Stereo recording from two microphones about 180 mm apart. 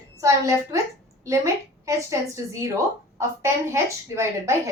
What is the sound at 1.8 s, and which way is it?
A woman's voice, 15° right (ahead or behind).